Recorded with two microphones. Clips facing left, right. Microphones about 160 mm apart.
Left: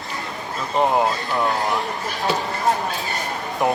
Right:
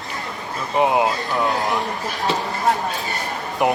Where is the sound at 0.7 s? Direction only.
10° right (ahead or behind).